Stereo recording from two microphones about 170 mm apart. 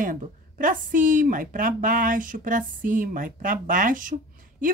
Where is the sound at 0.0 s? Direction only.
50° right (ahead or behind).